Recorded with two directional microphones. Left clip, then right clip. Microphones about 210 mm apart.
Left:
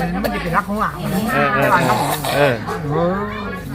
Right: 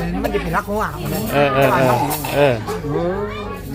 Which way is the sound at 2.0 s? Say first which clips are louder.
Left 2 dB; 30° left (ahead or behind).